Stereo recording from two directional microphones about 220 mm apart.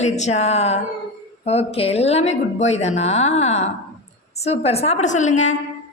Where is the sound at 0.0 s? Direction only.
30° left (ahead or behind).